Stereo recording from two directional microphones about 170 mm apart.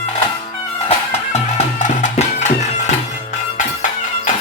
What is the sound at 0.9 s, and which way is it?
Music, 40° left (ahead or behind).